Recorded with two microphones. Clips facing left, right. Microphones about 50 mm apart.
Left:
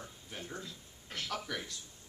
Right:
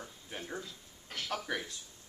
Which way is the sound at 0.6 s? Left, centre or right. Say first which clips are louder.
Right 1 dB; centre.